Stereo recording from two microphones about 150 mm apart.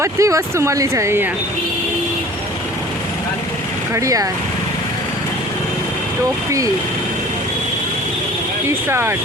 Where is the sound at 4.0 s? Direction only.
20° right (ahead or behind).